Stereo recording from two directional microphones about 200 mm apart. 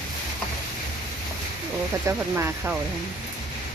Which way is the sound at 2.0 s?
10° right (ahead or behind).